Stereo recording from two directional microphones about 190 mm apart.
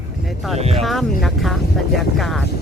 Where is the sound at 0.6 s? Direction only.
35° right (ahead or behind).